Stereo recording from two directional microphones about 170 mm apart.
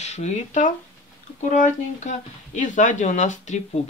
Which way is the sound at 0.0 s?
40° left (ahead or behind).